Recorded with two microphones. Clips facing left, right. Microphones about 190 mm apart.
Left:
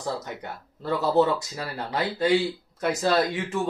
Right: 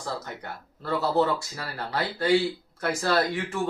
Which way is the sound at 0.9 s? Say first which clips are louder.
Left 2 dB; 20° left (ahead or behind).